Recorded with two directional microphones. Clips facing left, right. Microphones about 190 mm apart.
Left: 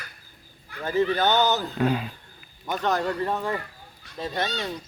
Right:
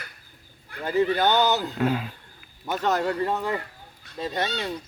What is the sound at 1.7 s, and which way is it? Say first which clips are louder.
Speech: left 1 dB; centre (ahead or behind).